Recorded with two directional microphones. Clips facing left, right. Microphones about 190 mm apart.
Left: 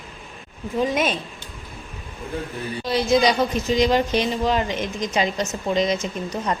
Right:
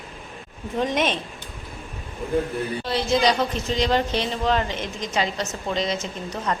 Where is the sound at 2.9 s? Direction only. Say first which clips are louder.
Left 3 dB; 15° left (ahead or behind).